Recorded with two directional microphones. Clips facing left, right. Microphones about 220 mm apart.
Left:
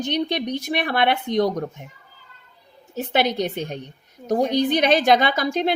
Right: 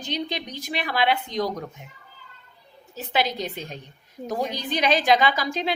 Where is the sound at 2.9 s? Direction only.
55° left (ahead or behind).